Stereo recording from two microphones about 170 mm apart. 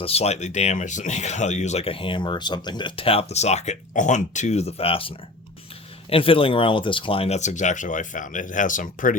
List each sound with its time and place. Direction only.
0.0 s speech: 35° left (ahead or behind)